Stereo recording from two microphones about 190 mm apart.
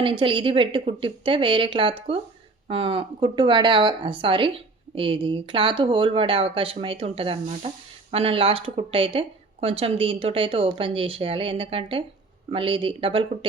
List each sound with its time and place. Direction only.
0.0 s speech: 25° right (ahead or behind)